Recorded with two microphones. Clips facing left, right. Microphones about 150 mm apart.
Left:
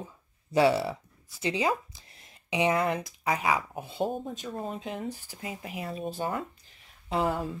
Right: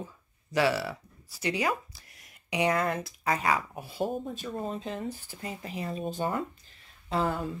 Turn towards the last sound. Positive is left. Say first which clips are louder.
# left 1 dB
turn(degrees=20)  # may be behind; listen again after turning